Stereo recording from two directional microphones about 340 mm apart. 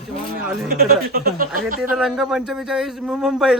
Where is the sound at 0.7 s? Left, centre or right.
Right.